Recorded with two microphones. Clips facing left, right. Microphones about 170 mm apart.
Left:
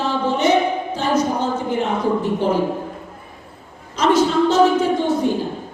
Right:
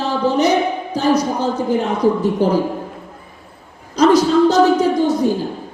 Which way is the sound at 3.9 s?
40° right (ahead or behind).